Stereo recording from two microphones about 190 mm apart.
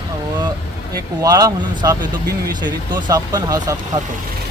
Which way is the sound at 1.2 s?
20° right (ahead or behind).